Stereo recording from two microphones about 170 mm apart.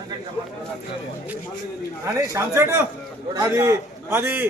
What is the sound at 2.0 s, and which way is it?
A man's voice, 15° right (ahead or behind).